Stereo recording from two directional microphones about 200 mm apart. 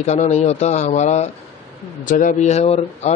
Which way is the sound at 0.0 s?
35° left (ahead or behind).